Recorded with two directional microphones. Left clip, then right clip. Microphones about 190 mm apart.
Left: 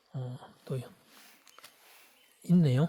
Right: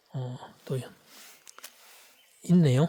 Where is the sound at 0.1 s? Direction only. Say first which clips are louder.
Right 4 dB; 25° right (ahead or behind).